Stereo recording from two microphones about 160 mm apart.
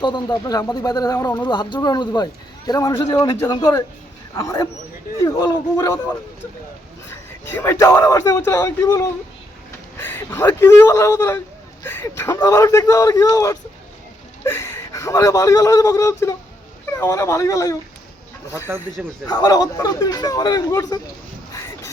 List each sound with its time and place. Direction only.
0.0 s a man's voice: 25° left (ahead or behind)
19.2 s speech: 25° left (ahead or behind)